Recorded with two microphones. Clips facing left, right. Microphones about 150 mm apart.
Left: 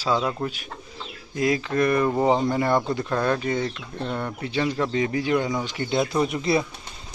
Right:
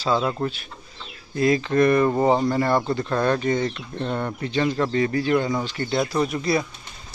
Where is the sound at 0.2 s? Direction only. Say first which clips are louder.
Right 2 dB; centre (ahead or behind).